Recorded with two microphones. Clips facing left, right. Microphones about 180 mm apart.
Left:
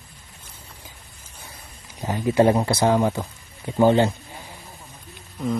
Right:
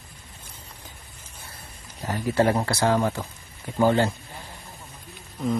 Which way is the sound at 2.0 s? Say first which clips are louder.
Left 4 dB; 15° left (ahead or behind).